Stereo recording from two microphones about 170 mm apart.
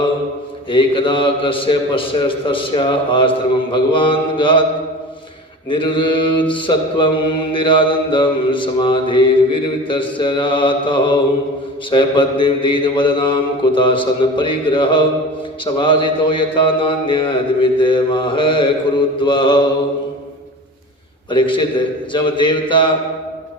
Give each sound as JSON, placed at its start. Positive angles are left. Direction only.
{"t": 0.7, "sound": "a man's voice", "side_deg": 30}
{"t": 5.6, "sound": "a man's voice", "side_deg": 30}
{"t": 21.2, "sound": "a man's voice", "side_deg": 30}